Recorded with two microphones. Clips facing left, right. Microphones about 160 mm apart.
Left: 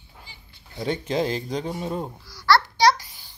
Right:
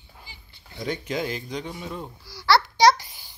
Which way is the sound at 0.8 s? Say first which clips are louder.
Left 4 dB; 30° left (ahead or behind).